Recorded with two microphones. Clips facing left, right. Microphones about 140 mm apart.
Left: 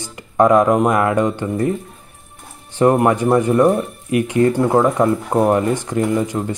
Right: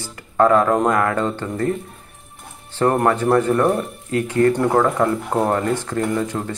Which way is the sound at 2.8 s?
15° left (ahead or behind).